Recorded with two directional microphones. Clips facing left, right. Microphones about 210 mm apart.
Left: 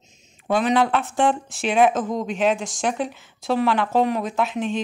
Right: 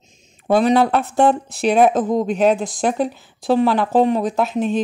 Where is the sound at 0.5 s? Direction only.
35° right (ahead or behind).